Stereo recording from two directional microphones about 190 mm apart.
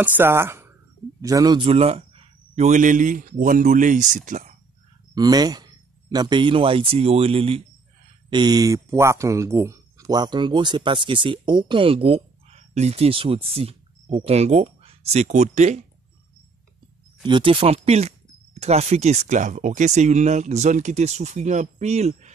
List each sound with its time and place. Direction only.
0.0 s speech: 10° right (ahead or behind); by 4.6 s 40° right (ahead or behind)
5.1 s speech: 20° right (ahead or behind); by 15.8 s 35° right (ahead or behind)
17.2 s speech: 25° right (ahead or behind)